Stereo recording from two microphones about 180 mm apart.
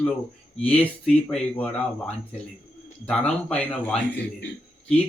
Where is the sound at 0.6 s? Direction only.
10° left (ahead or behind).